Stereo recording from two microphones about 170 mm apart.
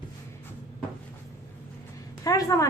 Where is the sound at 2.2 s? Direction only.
20° left (ahead or behind).